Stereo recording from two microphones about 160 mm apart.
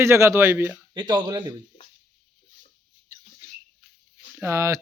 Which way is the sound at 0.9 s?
25° right (ahead or behind).